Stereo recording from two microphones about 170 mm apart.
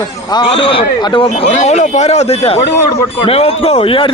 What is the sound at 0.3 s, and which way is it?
Speech, 30° left (ahead or behind).